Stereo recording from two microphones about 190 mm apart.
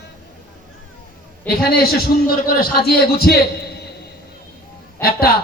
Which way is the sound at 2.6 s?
55° left (ahead or behind).